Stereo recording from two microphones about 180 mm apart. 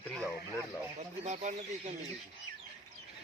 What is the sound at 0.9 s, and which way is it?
Speech, 40° right (ahead or behind).